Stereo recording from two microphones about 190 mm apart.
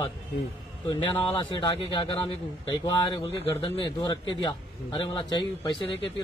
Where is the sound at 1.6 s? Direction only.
25° left (ahead or behind).